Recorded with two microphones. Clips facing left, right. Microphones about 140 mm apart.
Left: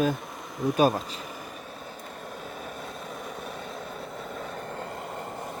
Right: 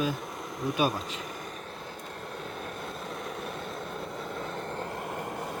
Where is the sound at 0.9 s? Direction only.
Centre (ahead or behind).